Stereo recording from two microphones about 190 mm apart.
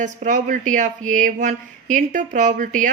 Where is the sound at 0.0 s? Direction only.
40° right (ahead or behind).